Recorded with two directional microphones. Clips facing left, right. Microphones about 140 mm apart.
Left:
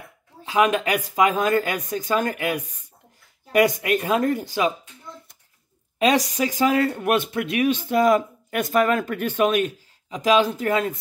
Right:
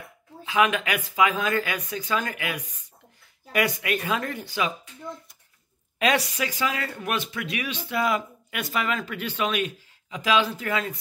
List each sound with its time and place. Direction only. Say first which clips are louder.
0.5 s speech: left 3 dB; 40° left (ahead or behind)
5.9 s speech: left 4 dB; 35° left (ahead or behind)